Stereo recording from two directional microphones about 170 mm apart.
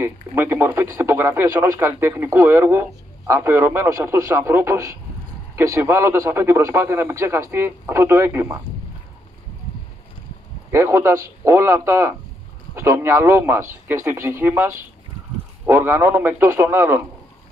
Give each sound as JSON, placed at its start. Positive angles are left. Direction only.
{"t": 0.0, "sound": "speech", "side_deg": -15}
{"t": 10.7, "sound": "speech", "side_deg": -15}